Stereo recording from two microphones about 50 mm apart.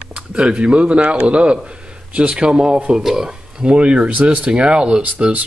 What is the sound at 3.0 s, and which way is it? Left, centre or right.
Speech, centre.